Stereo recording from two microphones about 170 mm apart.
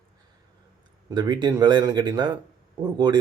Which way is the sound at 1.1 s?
25° right (ahead or behind).